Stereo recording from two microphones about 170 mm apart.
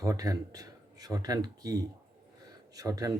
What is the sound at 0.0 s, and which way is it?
Speech, 20° right (ahead or behind).